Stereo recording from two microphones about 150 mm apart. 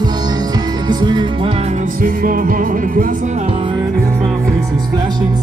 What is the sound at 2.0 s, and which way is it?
Music, 70° right (ahead or behind).